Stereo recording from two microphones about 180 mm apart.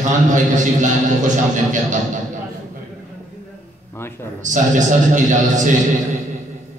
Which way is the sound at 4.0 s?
10° left (ahead or behind).